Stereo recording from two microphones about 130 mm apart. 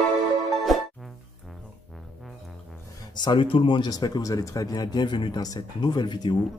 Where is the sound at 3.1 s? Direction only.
35° left (ahead or behind).